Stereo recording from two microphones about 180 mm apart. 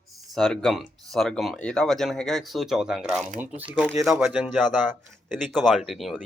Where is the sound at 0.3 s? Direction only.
5° left (ahead or behind).